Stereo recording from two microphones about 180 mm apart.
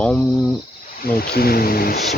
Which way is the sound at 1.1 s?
60° left (ahead or behind).